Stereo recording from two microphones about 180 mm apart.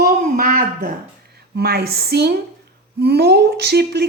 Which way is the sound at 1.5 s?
60° right (ahead or behind).